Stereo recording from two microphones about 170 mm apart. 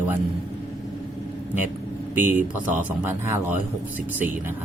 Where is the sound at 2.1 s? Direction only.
10° right (ahead or behind).